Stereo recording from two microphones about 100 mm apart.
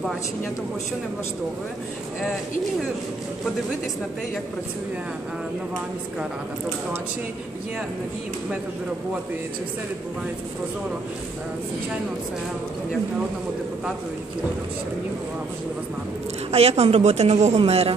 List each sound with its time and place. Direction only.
16.5 s a woman's voice: 90° right